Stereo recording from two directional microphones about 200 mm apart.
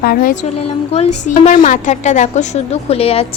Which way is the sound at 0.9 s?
30° left (ahead or behind).